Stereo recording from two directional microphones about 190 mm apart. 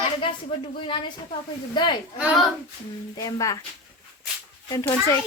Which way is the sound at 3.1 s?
20° left (ahead or behind).